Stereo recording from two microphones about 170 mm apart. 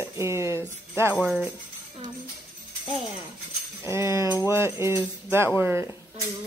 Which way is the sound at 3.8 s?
15° right (ahead or behind).